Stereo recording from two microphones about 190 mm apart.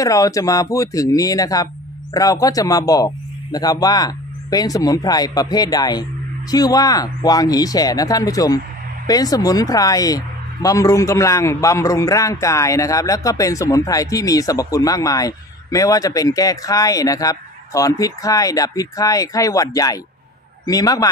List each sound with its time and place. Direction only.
0.0 s speech: 15° left (ahead or behind)